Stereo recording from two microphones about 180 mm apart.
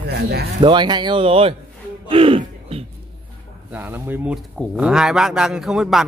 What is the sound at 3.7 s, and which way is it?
A man's voice, 10° right (ahead or behind).